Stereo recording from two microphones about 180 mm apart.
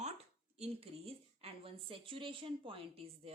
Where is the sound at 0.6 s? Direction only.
35° right (ahead or behind).